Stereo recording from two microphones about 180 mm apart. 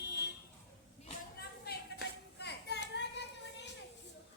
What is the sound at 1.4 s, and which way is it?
Clapping, 65° left (ahead or behind).